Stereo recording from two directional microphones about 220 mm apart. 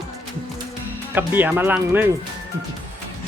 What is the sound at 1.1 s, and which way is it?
Speech, 10° right (ahead or behind).